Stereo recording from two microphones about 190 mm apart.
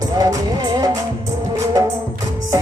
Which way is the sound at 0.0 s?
20° right (ahead or behind).